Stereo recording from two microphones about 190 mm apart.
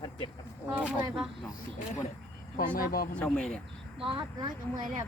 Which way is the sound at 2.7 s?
50° left (ahead or behind).